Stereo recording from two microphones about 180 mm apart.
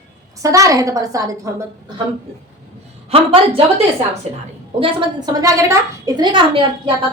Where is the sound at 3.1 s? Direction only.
30° right (ahead or behind).